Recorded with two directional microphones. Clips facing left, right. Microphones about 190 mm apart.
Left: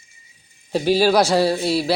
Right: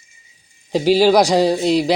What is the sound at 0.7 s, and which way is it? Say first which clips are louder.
Speech: right 3 dB; 15° right (ahead or behind).